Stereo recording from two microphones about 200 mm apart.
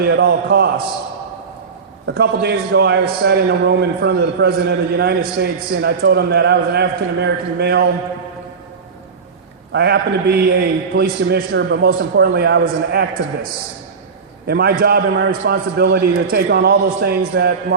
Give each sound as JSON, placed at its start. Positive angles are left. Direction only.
{"t": 0.0, "sound": "a man's voice", "side_deg": -55}
{"t": 2.0, "sound": "a man's voice", "side_deg": -55}
{"t": 9.7, "sound": "a man's voice", "side_deg": -55}